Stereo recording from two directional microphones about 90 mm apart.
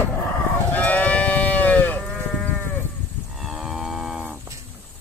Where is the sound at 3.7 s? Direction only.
5° right (ahead or behind).